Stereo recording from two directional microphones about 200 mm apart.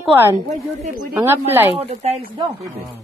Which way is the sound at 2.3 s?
20° right (ahead or behind).